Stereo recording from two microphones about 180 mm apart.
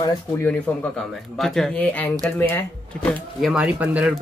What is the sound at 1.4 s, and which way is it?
Speech, 5° left (ahead or behind).